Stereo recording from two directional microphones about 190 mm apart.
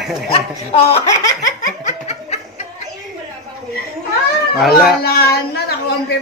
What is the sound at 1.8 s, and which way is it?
Snicker, 35° left (ahead or behind).